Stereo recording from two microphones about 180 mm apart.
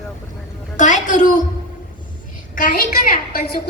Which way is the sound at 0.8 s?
40° left (ahead or behind).